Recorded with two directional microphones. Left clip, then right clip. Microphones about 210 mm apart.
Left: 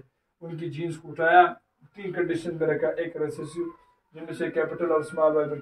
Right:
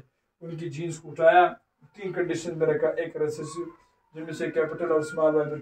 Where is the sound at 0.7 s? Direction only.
15° left (ahead or behind).